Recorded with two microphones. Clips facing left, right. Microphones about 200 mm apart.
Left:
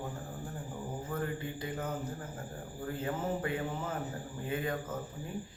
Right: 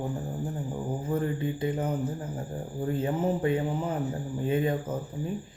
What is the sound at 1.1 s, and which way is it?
Speech, 20° right (ahead or behind).